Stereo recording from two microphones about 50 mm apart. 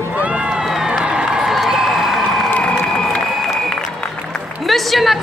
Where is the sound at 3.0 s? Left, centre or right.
Centre.